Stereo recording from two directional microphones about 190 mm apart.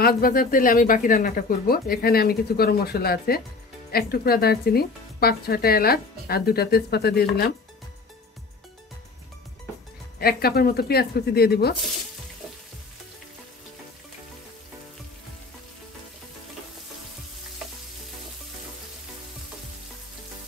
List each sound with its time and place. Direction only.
0.0 s speech: 50° left (ahead or behind)
10.1 s speech: 55° left (ahead or behind)